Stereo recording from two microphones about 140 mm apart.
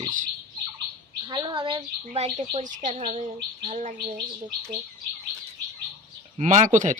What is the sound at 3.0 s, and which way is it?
Speech, 50° right (ahead or behind).